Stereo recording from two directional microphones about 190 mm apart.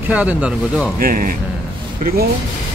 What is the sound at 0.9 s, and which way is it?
Speech, 50° right (ahead or behind).